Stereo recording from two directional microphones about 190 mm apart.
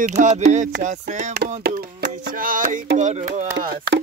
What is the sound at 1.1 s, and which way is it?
Music, 40° right (ahead or behind).